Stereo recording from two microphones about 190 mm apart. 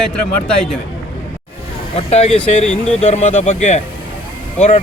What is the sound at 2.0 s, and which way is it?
Speech, 35° left (ahead or behind).